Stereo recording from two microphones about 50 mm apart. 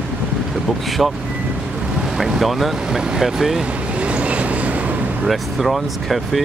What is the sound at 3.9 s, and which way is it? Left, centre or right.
Train, right.